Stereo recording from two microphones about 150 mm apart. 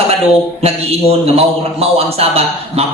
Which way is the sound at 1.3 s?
40° right (ahead or behind).